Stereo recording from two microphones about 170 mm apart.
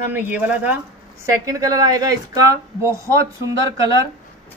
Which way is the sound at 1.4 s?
20° right (ahead or behind).